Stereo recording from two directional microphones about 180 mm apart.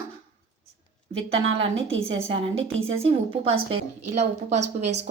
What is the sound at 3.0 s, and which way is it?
A woman's voice, 35° right (ahead or behind).